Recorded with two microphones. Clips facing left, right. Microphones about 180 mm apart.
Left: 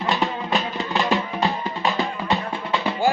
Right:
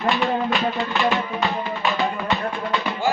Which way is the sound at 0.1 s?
35° left (ahead or behind).